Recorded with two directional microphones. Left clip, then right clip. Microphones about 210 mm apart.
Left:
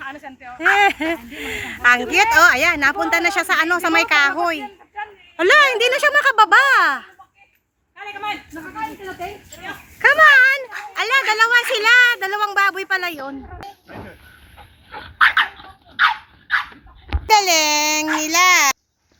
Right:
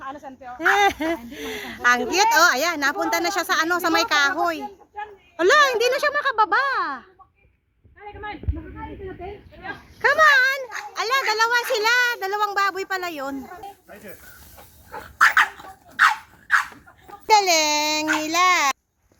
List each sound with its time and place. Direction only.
0.0 s a sound: 30° right (ahead or behind)
0.6 s a child's voice: centre (ahead or behind)
3.7 s speech: 20° left (ahead or behind)
5.4 s speech: 5° left (ahead or behind)
7.9 s a sound: 60° left (ahead or behind)
9.5 s a sound: 40° left (ahead or behind)
10.0 s a woman's voice: 5° left (ahead or behind)
15.0 s dog: 10° right (ahead or behind)
17.2 s a child's voice: 5° right (ahead or behind)